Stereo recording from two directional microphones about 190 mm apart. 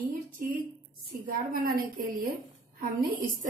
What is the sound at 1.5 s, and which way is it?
Speech, 50° right (ahead or behind).